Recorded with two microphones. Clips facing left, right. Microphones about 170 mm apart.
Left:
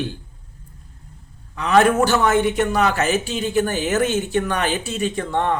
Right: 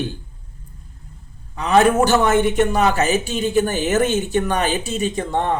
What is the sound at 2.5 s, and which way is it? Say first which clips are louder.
Speech: right 2 dB; 45° right (ahead or behind).